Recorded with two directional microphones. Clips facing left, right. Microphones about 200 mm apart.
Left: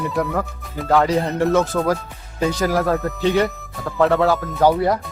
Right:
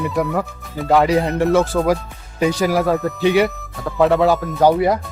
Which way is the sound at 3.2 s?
15° right (ahead or behind).